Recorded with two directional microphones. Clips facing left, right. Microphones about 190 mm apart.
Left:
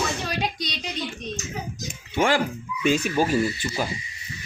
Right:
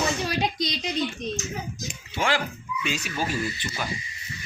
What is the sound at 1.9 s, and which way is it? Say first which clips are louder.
Speech: left 5 dB; 50° left (ahead or behind).